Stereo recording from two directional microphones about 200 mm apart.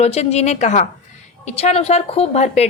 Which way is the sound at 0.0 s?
30° left (ahead or behind).